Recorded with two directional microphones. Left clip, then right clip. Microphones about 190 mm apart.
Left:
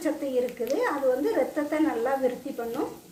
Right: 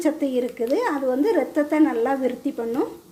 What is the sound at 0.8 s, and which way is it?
A child's voice, 45° right (ahead or behind).